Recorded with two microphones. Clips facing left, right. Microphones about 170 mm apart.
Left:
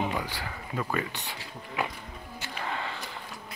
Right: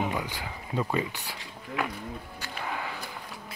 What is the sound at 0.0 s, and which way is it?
Speech, 15° right (ahead or behind).